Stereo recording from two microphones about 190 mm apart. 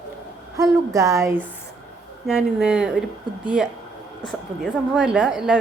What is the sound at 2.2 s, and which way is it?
Speech, 5° right (ahead or behind).